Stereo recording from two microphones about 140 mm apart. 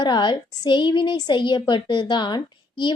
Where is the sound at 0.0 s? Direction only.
30° left (ahead or behind).